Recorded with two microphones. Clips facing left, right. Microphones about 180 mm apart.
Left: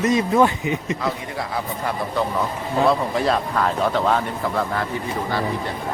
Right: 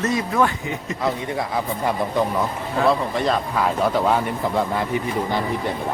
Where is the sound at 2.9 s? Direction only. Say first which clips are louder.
Right 1 dB; centre (ahead or behind).